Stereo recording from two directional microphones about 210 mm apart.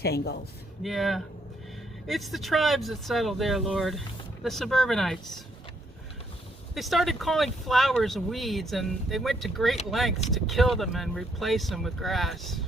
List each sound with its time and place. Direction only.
0.0 s speech: 50° left (ahead or behind)
0.8 s speech: centre (ahead or behind)
6.7 s speech: centre (ahead or behind)